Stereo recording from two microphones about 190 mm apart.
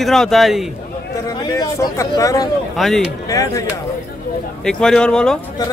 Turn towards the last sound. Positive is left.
turn(degrees=5)  # may be behind; listen again after turning